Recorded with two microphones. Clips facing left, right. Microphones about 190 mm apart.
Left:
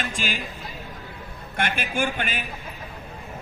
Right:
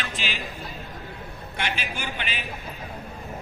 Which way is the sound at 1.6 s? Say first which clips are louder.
Left 6 dB; 50° left (ahead or behind).